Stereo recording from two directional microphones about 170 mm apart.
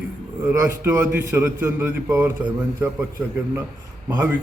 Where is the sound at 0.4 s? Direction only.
10° right (ahead or behind).